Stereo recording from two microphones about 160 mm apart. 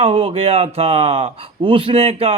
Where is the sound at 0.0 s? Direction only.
35° right (ahead or behind).